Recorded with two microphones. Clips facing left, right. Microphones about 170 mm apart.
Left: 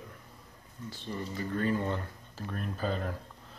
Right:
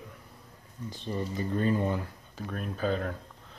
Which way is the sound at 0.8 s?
20° right (ahead or behind).